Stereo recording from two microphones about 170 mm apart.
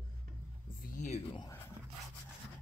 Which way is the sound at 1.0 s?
45° left (ahead or behind).